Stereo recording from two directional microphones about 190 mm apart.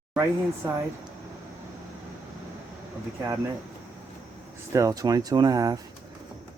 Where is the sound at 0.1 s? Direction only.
10° right (ahead or behind).